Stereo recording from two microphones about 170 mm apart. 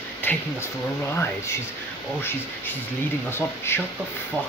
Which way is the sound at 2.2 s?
10° left (ahead or behind).